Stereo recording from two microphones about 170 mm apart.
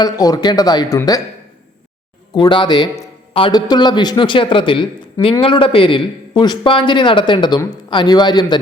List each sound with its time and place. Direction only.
0.0 s a man's voice: 25° left (ahead or behind)
2.3 s a man's voice: 25° left (ahead or behind)